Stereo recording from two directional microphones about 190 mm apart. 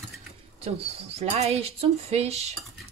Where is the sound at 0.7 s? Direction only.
30° right (ahead or behind).